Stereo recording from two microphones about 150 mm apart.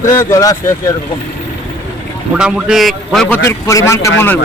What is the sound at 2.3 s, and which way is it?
A man's voice, 5° right (ahead or behind).